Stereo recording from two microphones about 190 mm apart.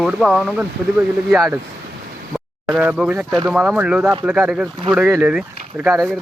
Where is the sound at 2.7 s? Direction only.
5° right (ahead or behind).